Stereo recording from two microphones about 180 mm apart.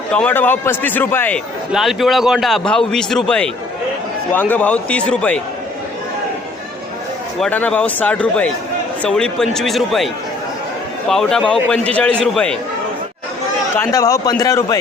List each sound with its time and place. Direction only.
0.1 s a man's voice: 10° left (ahead or behind)
1.7 s a man's voice: centre (ahead or behind)
7.3 s a man's voice: 5° left (ahead or behind)
11.1 s a man's voice: centre (ahead or behind)
13.7 s a man's voice: 20° left (ahead or behind)